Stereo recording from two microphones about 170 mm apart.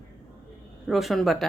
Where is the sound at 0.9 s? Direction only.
Centre (ahead or behind).